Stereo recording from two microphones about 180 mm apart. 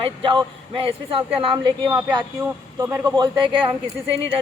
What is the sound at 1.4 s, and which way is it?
Speech, 30° right (ahead or behind).